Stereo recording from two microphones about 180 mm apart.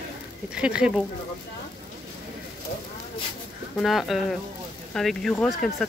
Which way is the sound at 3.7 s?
Centre (ahead or behind).